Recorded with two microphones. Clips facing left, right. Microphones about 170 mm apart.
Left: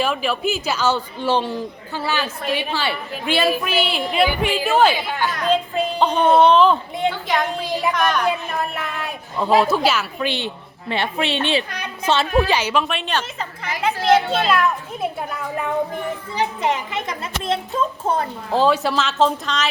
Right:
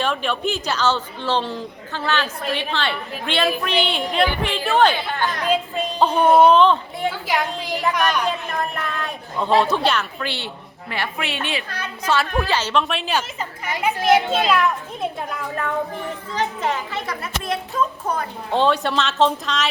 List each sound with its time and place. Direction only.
0.0 s a woman's voice: 5° left (ahead or behind)
5.7 s a woman's voice: 5° right (ahead or behind)
8.2 s a woman's voice: 10° left (ahead or behind)
10.2 s a child's voice: 20° left (ahead or behind)
12.8 s a child's voice: centre (ahead or behind)
14.3 s a child's voice: centre (ahead or behind); by 18.3 s 25° left (ahead or behind)
18.5 s a child's voice: 5° left (ahead or behind)